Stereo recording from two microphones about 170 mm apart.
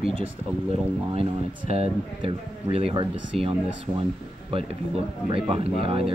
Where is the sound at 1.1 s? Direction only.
35° right (ahead or behind).